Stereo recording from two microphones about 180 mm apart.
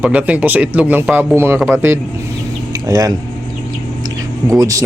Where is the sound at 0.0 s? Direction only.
5° right (ahead or behind).